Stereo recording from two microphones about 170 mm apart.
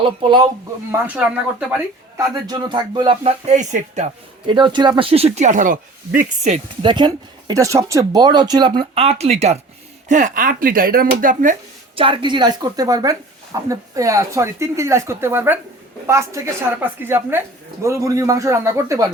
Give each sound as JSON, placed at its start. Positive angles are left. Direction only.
{"t": 0.0, "sound": "speech", "side_deg": -30}
{"t": 0.9, "sound": "speech", "side_deg": -10}
{"t": 2.1, "sound": "speech", "side_deg": -25}
{"t": 4.4, "sound": "speech", "side_deg": -25}
{"t": 6.8, "sound": "speech", "side_deg": -25}
{"t": 10.1, "sound": "speech", "side_deg": -50}
{"t": 11.9, "sound": "speech", "side_deg": -30}